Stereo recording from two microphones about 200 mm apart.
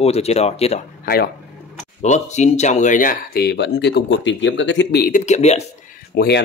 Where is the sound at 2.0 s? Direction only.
35° left (ahead or behind); by 5.2 s 50° left (ahead or behind).